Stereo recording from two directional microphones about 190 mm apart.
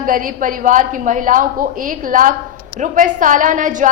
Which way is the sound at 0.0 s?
45° right (ahead or behind).